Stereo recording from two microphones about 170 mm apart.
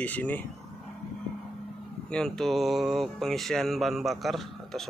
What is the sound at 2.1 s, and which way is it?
Speech, 5° left (ahead or behind).